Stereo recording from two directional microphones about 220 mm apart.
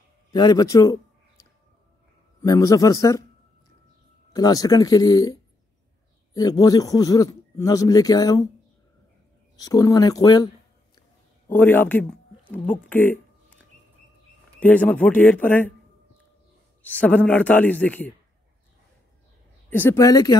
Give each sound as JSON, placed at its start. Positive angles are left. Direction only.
{"t": 0.3, "sound": "a man's voice", "side_deg": 20}
{"t": 2.4, "sound": "a man's voice", "side_deg": 15}
{"t": 4.3, "sound": "a man's voice", "side_deg": 15}
{"t": 9.6, "sound": "a man's voice", "side_deg": 15}
{"t": 14.6, "sound": "a man's voice", "side_deg": 10}
{"t": 16.8, "sound": "a man's voice", "side_deg": 5}
{"t": 19.7, "sound": "a man's voice", "side_deg": 10}